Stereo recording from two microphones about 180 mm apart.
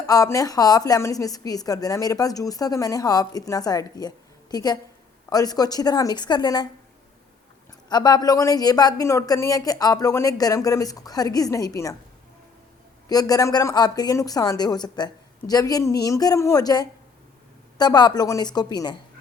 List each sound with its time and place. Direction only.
0.1 s speech: 20° left (ahead or behind)
7.9 s speech: 20° left (ahead or behind)
13.1 s speech: 20° left (ahead or behind)